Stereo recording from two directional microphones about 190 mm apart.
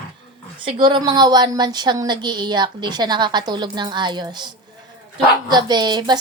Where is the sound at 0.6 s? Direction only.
25° right (ahead or behind).